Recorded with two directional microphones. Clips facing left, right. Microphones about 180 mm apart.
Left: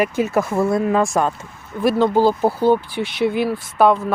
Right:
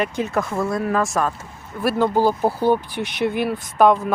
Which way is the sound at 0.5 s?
25° left (ahead or behind).